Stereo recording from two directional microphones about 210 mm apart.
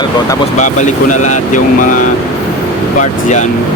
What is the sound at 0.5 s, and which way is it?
Speech, 35° left (ahead or behind).